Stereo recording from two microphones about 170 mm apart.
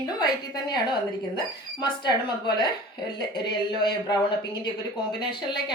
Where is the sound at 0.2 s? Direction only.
25° left (ahead or behind).